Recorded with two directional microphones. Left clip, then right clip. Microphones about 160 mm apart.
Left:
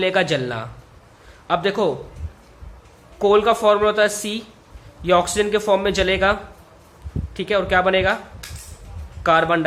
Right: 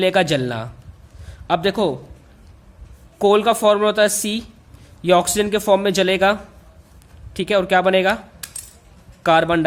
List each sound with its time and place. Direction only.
0.0 s speech: 40° right (ahead or behind)
3.2 s a man's voice: 40° right (ahead or behind)
9.2 s speech: 40° right (ahead or behind)